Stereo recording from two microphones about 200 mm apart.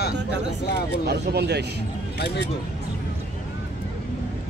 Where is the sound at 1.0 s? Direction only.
55° right (ahead or behind).